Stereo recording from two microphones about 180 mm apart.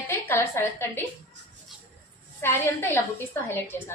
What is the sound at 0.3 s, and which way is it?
Speech, 10° left (ahead or behind).